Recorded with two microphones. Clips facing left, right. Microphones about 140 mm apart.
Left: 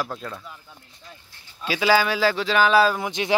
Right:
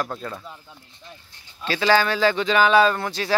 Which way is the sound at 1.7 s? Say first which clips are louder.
Even; 10° left (ahead or behind).